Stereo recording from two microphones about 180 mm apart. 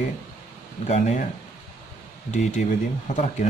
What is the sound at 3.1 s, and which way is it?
Speech, 40° left (ahead or behind).